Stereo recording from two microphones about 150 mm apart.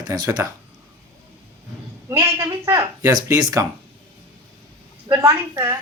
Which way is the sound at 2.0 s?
20° right (ahead or behind).